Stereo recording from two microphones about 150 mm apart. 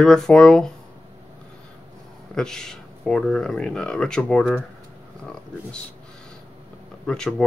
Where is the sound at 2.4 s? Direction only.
5° left (ahead or behind).